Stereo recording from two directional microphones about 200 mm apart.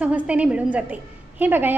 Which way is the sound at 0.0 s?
5° right (ahead or behind).